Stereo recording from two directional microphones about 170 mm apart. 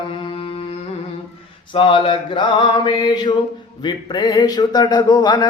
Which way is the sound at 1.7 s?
30° left (ahead or behind).